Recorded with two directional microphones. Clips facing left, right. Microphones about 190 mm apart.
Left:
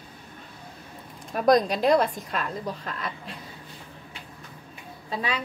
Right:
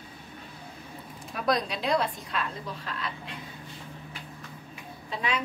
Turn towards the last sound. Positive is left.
turn(degrees=35)  # may be behind; listen again after turning